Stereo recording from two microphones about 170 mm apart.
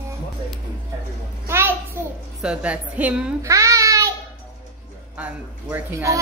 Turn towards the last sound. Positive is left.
turn(degrees=-15)  # may be behind; listen again after turning